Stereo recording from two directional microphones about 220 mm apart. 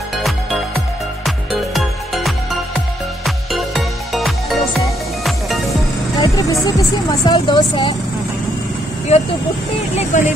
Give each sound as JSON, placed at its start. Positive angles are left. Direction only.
{"t": 1.2, "sound": "music", "side_deg": 0}
{"t": 3.3, "sound": "music", "side_deg": 0}
{"t": 6.1, "sound": "speech", "side_deg": 15}
{"t": 9.1, "sound": "speech", "side_deg": 30}